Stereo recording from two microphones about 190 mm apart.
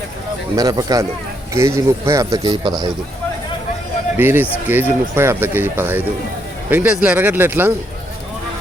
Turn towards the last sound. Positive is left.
turn(degrees=-10)  # may be behind; listen again after turning